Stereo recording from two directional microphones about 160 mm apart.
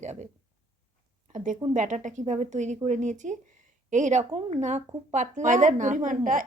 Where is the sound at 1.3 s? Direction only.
55° right (ahead or behind).